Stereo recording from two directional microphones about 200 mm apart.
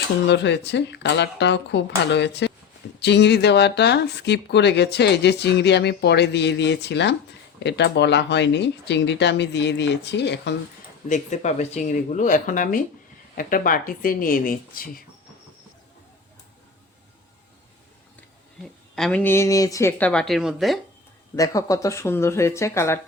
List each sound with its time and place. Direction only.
0.3 s speech: 60° left (ahead or behind)
11.1 s speech: 35° left (ahead or behind)
18.6 s speech: 5° left (ahead or behind)
21.3 s speech: 15° left (ahead or behind)